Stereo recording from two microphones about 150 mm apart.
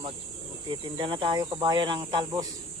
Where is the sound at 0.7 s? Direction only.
30° right (ahead or behind).